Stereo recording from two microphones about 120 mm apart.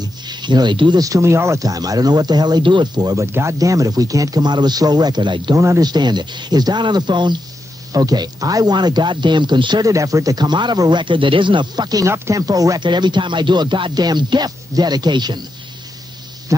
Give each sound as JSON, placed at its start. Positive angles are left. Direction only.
{"t": 0.0, "sound": "speech", "side_deg": -40}
{"t": 3.3, "sound": "speech", "side_deg": -20}
{"t": 5.6, "sound": "speech", "side_deg": -25}
{"t": 5.9, "sound": "speech", "side_deg": -35}